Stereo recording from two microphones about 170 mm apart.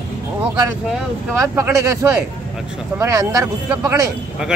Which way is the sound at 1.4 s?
15° right (ahead or behind).